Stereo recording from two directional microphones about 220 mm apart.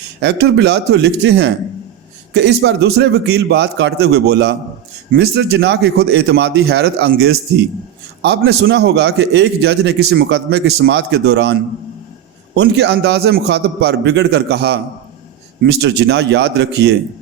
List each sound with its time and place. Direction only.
0.2 s a man's voice: 50° right (ahead or behind)
12.5 s a man's voice: 50° right (ahead or behind)